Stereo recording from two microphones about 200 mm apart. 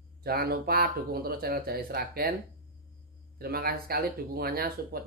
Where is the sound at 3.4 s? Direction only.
50° right (ahead or behind).